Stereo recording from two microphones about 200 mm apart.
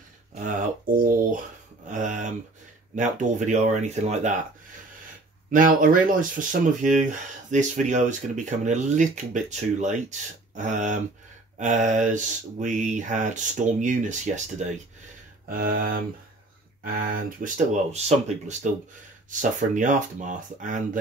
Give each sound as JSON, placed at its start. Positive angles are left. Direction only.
{"t": 0.3, "sound": "a sound", "side_deg": -40}
{"t": 3.0, "sound": "speech", "side_deg": -40}
{"t": 5.5, "sound": "speech", "side_deg": -40}
{"t": 19.7, "sound": "speech", "side_deg": -40}